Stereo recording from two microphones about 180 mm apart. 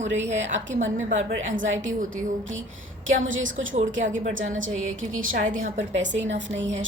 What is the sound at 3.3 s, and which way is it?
A woman's voice, 90° right.